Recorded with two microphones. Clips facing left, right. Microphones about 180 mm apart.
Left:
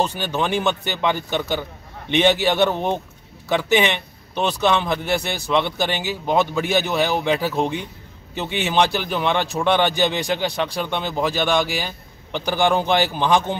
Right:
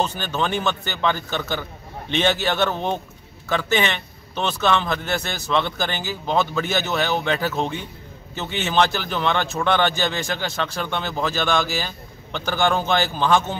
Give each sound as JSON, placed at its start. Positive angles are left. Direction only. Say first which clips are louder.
{"t": 0.0, "sound": "speech", "louder": "left 2 dB", "side_deg": 15}